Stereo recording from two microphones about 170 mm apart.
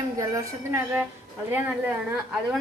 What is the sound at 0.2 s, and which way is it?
A woman's voice, 20° right (ahead or behind).